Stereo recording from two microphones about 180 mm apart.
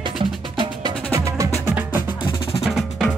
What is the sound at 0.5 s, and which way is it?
Music, 20° right (ahead or behind).